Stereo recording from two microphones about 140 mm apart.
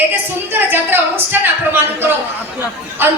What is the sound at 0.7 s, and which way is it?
A woman's voice, 15° right (ahead or behind).